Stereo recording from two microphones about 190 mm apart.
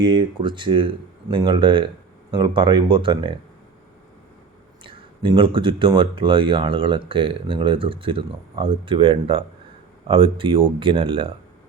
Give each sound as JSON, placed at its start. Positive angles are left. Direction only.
{"t": 0.0, "sound": "speech", "side_deg": -25}
{"t": 4.8, "sound": "speech", "side_deg": -25}